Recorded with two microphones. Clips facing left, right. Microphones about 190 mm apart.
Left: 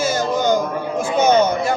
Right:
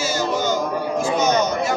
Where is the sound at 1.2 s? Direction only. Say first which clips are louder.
Left 7 dB; 55° left (ahead or behind).